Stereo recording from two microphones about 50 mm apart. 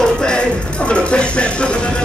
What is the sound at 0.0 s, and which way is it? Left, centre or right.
Music, centre.